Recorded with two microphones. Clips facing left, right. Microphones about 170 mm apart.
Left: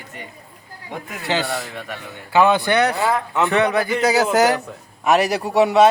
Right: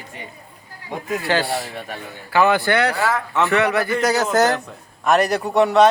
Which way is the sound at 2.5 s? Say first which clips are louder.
Left 1 dB; 20° left (ahead or behind).